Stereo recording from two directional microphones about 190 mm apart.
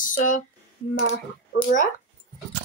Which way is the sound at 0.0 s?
40° left (ahead or behind).